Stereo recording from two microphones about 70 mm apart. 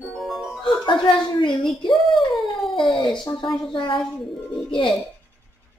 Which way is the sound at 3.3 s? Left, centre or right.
Centre.